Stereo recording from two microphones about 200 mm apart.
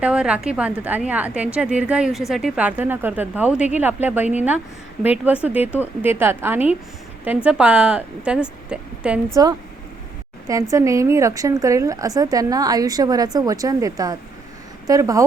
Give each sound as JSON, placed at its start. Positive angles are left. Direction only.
{"t": 0.0, "sound": "a woman's voice", "side_deg": -5}
{"t": 10.5, "sound": "a woman's voice", "side_deg": -15}